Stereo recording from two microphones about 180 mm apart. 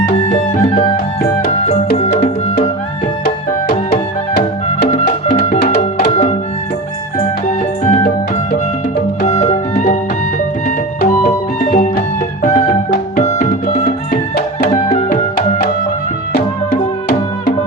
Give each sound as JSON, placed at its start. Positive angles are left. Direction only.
{"t": 0.3, "sound": "music", "side_deg": 40}
{"t": 4.9, "sound": "music", "side_deg": 45}
{"t": 11.0, "sound": "music", "side_deg": 50}
{"t": 15.1, "sound": "music", "side_deg": 50}